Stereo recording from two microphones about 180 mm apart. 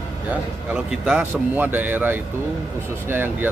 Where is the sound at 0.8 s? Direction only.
5° right (ahead or behind).